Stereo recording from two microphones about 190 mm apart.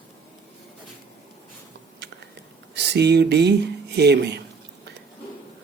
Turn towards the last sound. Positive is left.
turn(degrees=-60)  # may be behind; listen again after turning